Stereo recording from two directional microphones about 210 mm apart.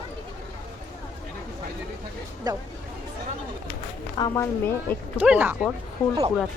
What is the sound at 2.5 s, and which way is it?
Speech, 15° right (ahead or behind).